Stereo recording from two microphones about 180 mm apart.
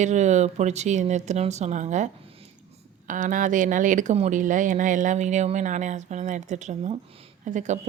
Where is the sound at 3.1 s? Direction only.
45° right (ahead or behind).